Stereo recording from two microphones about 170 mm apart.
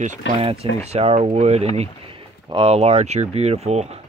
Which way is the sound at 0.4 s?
35° right (ahead or behind).